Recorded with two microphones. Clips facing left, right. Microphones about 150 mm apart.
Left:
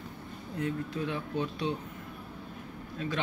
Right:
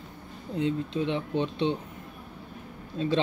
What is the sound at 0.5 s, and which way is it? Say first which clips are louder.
Speech: right 5 dB; 20° right (ahead or behind).